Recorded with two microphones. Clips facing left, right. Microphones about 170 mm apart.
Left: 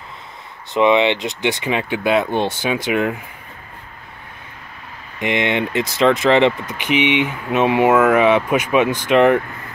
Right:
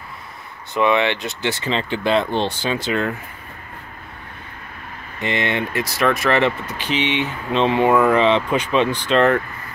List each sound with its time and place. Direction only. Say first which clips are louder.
0.7 s speech: left 3 dB; 20° left (ahead or behind)
5.2 s speech: left 3 dB; 15° left (ahead or behind)